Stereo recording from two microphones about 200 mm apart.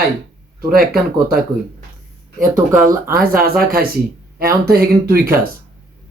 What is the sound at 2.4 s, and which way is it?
Speech, 40° right (ahead or behind).